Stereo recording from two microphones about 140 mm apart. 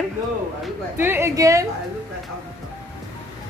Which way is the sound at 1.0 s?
15° right (ahead or behind).